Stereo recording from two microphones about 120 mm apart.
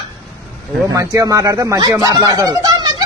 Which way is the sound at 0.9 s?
30° right (ahead or behind).